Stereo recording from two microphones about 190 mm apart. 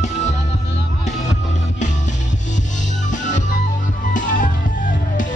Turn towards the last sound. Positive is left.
turn(degrees=45)  # may be behind; listen again after turning